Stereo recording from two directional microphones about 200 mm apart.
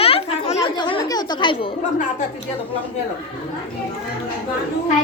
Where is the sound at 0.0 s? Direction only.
30° left (ahead or behind).